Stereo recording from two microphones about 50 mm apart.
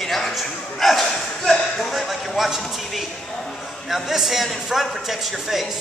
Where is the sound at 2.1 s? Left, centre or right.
Centre.